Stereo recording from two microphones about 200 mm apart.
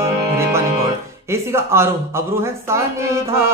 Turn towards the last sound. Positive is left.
turn(degrees=-15)  # may be behind; listen again after turning